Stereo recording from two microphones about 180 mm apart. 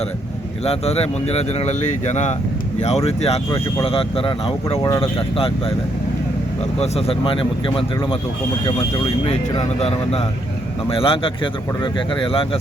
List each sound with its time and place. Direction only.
0.6 s speech: 35° left (ahead or behind)
6.7 s speech: 35° left (ahead or behind)
9.2 s speech: 35° left (ahead or behind)